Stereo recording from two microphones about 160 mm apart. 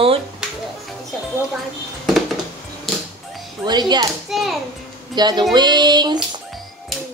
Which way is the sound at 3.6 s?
25° right (ahead or behind).